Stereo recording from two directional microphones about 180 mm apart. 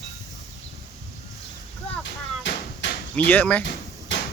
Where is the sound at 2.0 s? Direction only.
80° left.